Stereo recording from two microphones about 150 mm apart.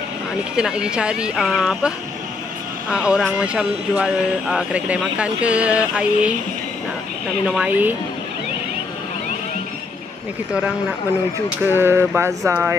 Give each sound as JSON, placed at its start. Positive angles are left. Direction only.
{"t": 0.6, "sound": "speech", "side_deg": -5}
{"t": 7.4, "sound": "speech", "side_deg": -5}
{"t": 11.6, "sound": "speech", "side_deg": -15}